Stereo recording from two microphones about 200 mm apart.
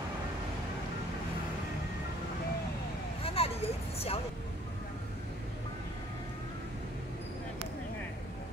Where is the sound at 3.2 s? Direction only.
30° left (ahead or behind).